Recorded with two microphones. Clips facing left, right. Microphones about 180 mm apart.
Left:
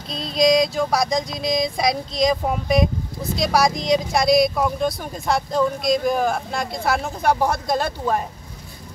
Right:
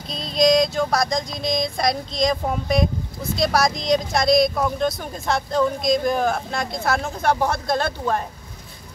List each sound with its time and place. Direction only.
0.1 s speech: 5° left (ahead or behind)